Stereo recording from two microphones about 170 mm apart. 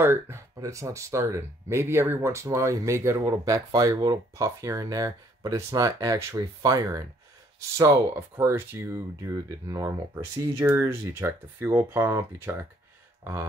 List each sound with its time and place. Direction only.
0.0 s speech: 15° right (ahead or behind)